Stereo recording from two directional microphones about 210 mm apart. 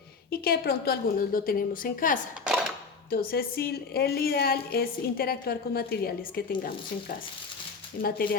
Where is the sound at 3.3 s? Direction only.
45° left (ahead or behind).